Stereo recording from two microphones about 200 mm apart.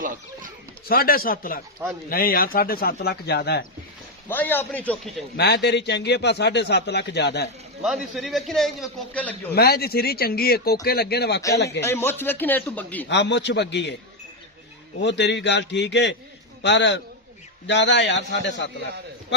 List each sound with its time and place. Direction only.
0.9 s speech: 45° left (ahead or behind)
4.3 s speech: 10° left (ahead or behind)
5.4 s a man's voice: 55° left (ahead or behind)
7.8 s a man's voice: centre (ahead or behind)
9.5 s a man's voice: 50° left (ahead or behind)
11.8 s speech: 10° left (ahead or behind)
13.1 s a man's voice: 60° left (ahead or behind)
15.0 s a man's voice: 60° left (ahead or behind)